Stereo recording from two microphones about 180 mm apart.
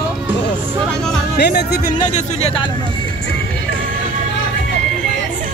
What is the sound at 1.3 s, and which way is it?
Speech, 65° left (ahead or behind).